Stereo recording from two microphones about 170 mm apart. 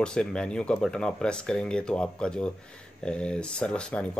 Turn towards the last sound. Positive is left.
turn(degrees=5)  # may be behind; listen again after turning